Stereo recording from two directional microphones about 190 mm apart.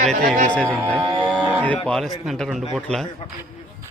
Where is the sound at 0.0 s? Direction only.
40° right (ahead or behind).